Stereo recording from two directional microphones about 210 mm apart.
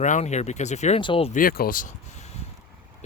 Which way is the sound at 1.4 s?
40° left (ahead or behind).